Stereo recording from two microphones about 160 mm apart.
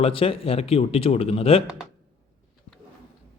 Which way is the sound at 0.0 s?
35° left (ahead or behind).